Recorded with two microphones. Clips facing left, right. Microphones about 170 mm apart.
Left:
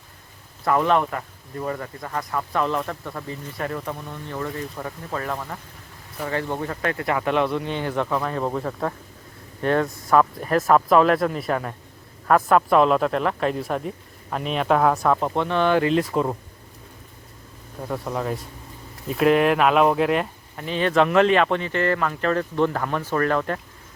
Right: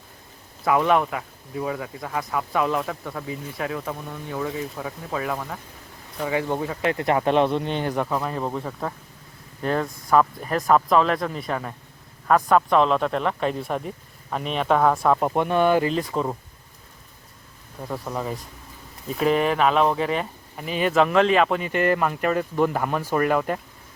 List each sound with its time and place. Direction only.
0.6 s speech: 5° right (ahead or behind)
6.9 s speech: 25° right (ahead or behind)
7.9 s speech: 10° right (ahead or behind)
15.2 s speech: 10° right (ahead or behind)
17.8 s speech: centre (ahead or behind)